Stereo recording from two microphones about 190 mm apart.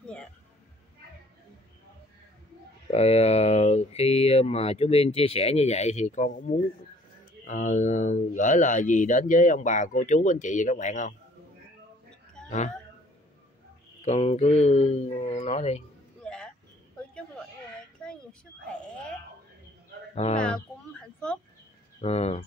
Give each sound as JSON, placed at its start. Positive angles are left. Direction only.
{"t": 2.9, "sound": "speech", "side_deg": 35}
{"t": 12.4, "sound": "speech", "side_deg": 40}
{"t": 14.0, "sound": "speech", "side_deg": 35}
{"t": 16.3, "sound": "vehicle", "side_deg": 5}
{"t": 18.0, "sound": "a sound", "side_deg": 5}
{"t": 20.3, "sound": "speech", "side_deg": 5}
{"t": 22.0, "sound": "speech", "side_deg": 35}